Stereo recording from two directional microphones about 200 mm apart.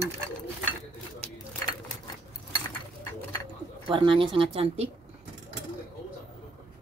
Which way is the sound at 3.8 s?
25° right (ahead or behind).